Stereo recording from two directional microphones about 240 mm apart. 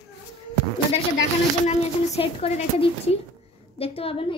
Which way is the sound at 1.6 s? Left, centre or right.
Left.